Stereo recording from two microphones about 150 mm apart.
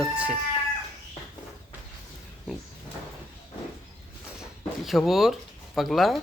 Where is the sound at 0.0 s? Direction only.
5° right (ahead or behind).